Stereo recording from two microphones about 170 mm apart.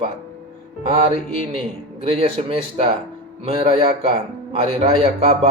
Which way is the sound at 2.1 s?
35° right (ahead or behind).